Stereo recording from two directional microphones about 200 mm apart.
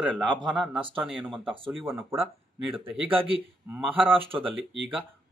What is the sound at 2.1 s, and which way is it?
Speech, 10° right (ahead or behind).